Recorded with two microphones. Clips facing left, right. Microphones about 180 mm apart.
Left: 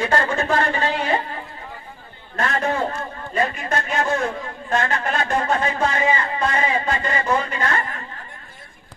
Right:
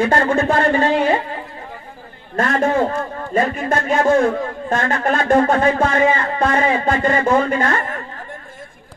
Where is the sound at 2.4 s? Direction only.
45° right (ahead or behind).